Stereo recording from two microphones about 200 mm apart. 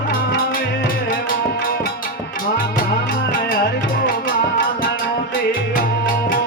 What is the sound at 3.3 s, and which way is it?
Music, 50° left (ahead or behind).